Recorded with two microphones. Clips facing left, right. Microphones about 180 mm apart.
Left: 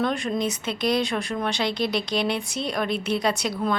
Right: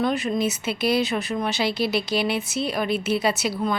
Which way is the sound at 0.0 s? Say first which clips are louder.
Right 2 dB; 5° right (ahead or behind).